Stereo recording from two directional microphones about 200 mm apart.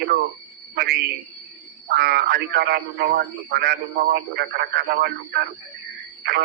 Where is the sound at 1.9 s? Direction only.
50° right (ahead or behind).